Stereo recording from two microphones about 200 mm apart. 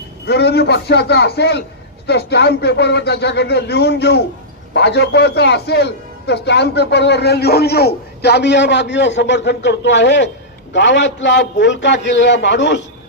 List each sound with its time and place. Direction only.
0.3 s speech: 55° left (ahead or behind)